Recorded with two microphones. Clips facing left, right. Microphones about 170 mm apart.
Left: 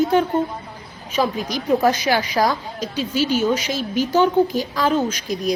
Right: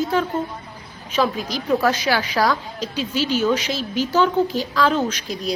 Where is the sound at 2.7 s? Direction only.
45° left (ahead or behind).